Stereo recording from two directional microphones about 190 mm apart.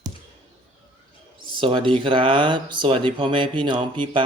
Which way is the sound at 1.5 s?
25° right (ahead or behind).